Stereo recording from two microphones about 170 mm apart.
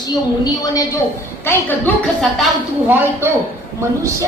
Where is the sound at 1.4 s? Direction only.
10° left (ahead or behind).